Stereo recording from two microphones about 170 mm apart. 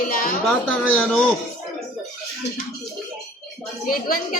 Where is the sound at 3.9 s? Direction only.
60° left (ahead or behind).